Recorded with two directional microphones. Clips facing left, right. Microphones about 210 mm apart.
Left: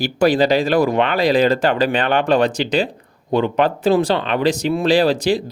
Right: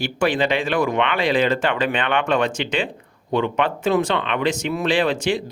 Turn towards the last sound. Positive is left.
turn(degrees=35)  # may be behind; listen again after turning